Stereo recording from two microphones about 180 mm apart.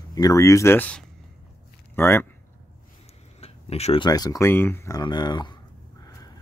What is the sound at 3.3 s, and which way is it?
Speech, 35° left (ahead or behind).